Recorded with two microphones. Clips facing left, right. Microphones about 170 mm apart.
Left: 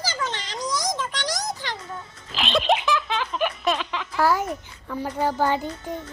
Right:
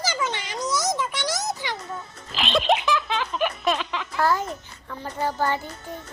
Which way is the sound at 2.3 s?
Centre (ahead or behind).